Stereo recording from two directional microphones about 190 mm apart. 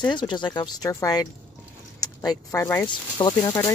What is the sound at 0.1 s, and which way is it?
Speech, 25° left (ahead or behind).